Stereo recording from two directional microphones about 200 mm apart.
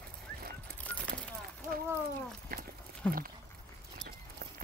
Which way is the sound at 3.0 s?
5° left (ahead or behind).